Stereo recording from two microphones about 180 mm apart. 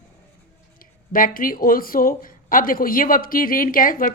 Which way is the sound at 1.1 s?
50° left (ahead or behind).